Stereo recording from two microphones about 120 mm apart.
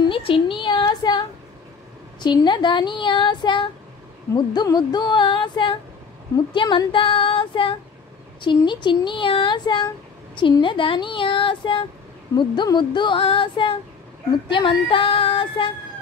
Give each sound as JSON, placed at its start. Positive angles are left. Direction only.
{"t": 0.0, "sound": "speech", "side_deg": 45}